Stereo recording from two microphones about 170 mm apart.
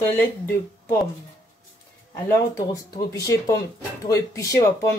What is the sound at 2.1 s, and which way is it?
Speech, 15° left (ahead or behind).